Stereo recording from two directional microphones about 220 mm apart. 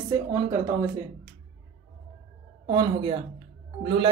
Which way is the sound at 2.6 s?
20° right (ahead or behind).